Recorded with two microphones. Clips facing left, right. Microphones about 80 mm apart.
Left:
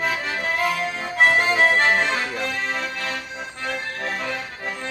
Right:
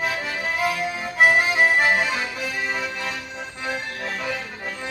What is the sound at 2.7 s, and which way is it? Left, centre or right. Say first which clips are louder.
Music: left 1 dB; centre.